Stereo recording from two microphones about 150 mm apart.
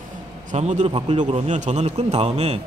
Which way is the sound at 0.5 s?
50° right (ahead or behind).